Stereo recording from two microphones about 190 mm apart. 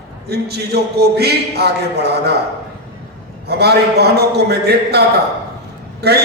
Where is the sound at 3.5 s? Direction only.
60° right (ahead or behind).